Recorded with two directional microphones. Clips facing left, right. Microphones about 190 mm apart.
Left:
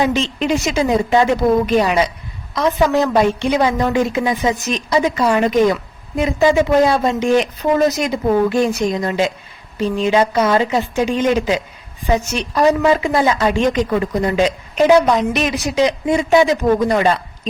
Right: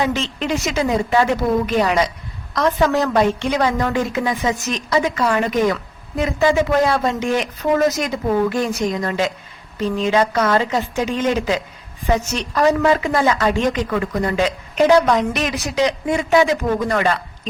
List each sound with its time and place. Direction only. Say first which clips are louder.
0.0 s a woman's voice: left 4 dB; 20° left (ahead or behind)